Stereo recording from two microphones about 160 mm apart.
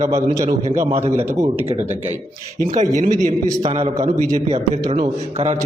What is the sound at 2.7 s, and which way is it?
A man's voice, 50° right (ahead or behind).